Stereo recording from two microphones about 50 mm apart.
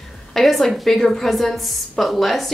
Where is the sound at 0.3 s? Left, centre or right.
Centre.